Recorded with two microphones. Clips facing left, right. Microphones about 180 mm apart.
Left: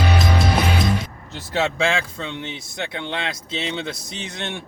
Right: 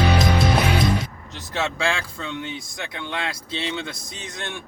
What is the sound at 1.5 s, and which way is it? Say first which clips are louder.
Speech: left 4 dB; 25° left (ahead or behind).